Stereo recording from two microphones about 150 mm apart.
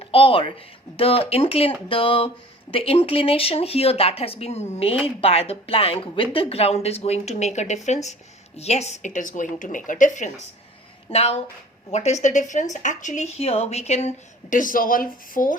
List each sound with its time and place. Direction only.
0.0 s a woman's voice: 40° left (ahead or behind); by 10.3 s 55° left (ahead or behind)
11.1 s speech: 45° left (ahead or behind)
14.5 s a woman's voice: 65° left (ahead or behind)